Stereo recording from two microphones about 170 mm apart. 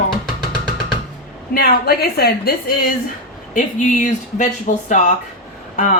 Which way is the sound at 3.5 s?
50° left (ahead or behind).